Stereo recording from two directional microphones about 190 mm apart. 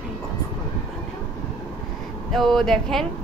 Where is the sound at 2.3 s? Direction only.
Centre (ahead or behind).